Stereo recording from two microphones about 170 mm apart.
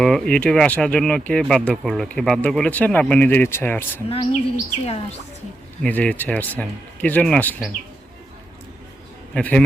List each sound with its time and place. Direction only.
0.0 s speech: 5° left (ahead or behind)
4.1 s speech: 30° left (ahead or behind)
5.8 s speech: 10° left (ahead or behind)
9.3 s speech: 5° left (ahead or behind)